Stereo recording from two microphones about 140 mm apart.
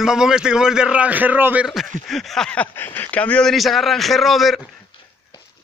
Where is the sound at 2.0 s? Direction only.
Centre (ahead or behind).